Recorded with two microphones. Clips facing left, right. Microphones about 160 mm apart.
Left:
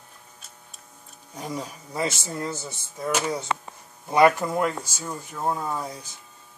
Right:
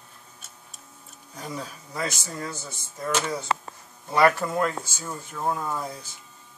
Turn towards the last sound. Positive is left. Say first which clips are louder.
# left 1 dB
turn(degrees=10)  # may be behind; listen again after turning